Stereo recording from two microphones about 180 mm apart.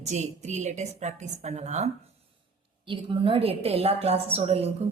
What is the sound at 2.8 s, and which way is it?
A woman's voice, 30° right (ahead or behind).